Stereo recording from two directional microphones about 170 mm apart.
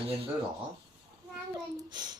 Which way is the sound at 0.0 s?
35° right (ahead or behind).